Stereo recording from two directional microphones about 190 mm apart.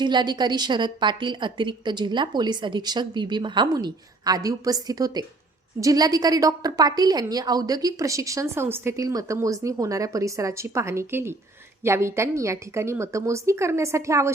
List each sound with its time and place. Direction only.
0.0 s a woman's voice: 25° right (ahead or behind)